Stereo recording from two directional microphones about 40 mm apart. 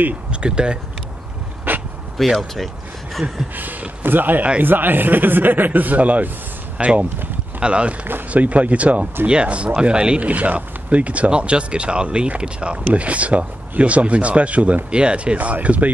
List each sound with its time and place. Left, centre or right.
0.3 s speech: right
1.7 s dog: right
2.3 s speech: centre
3.5 s speech: right
6.8 s speech: right
10.3 s speech: right